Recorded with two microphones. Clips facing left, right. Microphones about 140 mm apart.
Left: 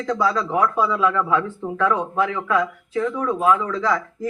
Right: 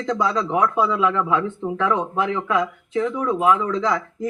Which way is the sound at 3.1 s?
15° right (ahead or behind).